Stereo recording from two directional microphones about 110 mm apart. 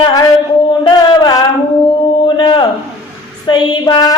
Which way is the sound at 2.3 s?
45° left (ahead or behind).